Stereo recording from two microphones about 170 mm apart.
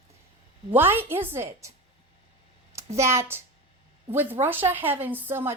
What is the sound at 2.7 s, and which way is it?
A woman's voice, 15° right (ahead or behind).